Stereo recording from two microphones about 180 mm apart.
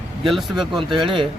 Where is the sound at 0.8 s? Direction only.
25° right (ahead or behind).